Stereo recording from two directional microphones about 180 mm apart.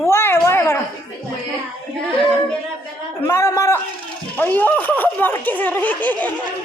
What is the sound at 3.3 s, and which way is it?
Speech, 15° left (ahead or behind).